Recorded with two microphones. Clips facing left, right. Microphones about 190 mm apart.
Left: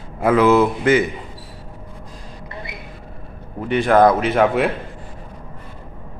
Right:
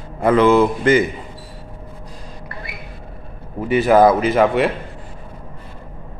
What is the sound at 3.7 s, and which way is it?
A man's voice, 5° right (ahead or behind).